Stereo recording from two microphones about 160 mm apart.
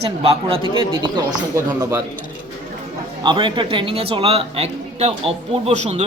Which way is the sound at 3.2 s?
30° right (ahead or behind).